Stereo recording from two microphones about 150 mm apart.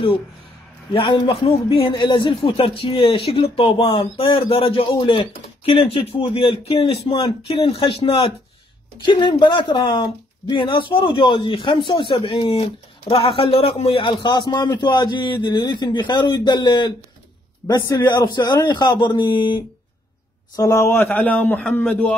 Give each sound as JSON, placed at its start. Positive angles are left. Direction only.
{"t": 0.9, "sound": "a man's voice", "side_deg": 30}
{"t": 20.5, "sound": "a man's voice", "side_deg": 20}